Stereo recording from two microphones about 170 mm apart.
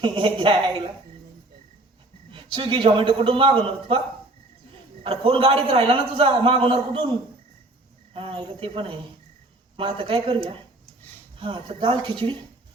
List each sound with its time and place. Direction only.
0.0 s a man's voice: 30° right (ahead or behind)
2.3 s a man's voice: 30° right (ahead or behind)
5.0 s a man's voice: 35° right (ahead or behind)